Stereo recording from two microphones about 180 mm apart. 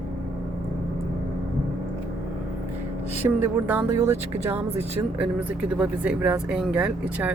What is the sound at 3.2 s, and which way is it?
Speech, 20° right (ahead or behind).